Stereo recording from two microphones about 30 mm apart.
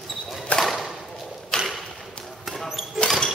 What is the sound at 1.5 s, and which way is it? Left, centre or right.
Arrow, left.